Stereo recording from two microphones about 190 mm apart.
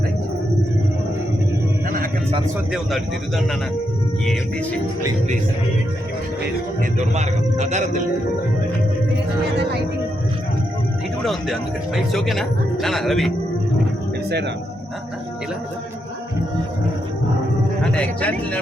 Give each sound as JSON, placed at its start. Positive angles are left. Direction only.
{"t": 2.7, "sound": "speech", "side_deg": 0}
{"t": 7.0, "sound": "a man's voice", "side_deg": -35}
{"t": 9.5, "sound": "speech", "side_deg": -60}
{"t": 11.2, "sound": "speech", "side_deg": 0}
{"t": 14.3, "sound": "speech", "side_deg": -60}
{"t": 17.9, "sound": "speech", "side_deg": 5}